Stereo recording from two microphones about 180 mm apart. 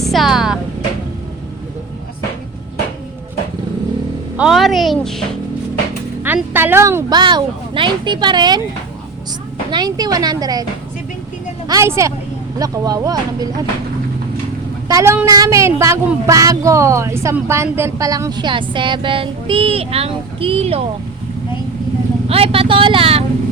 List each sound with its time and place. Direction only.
0.0 s music: centre (ahead or behind)
4.4 s a woman's voice: centre (ahead or behind)
6.2 s a woman's voice: 10° right (ahead or behind)
9.6 s a woman's voice: 25° right (ahead or behind)
11.7 s a woman's voice: 15° right (ahead or behind)
14.8 s a woman's voice: 15° right (ahead or behind); by 20.8 s 35° right (ahead or behind)
22.3 s vehicle: 30° right (ahead or behind)